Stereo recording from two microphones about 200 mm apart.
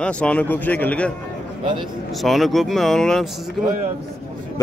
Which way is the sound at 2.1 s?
Centre (ahead or behind).